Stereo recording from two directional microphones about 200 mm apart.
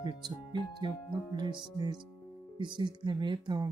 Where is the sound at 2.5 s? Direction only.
25° right (ahead or behind).